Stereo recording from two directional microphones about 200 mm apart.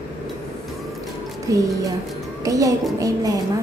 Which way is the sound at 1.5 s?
15° right (ahead or behind).